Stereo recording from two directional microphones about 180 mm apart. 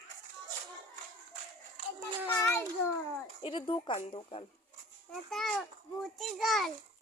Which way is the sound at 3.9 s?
30° left (ahead or behind).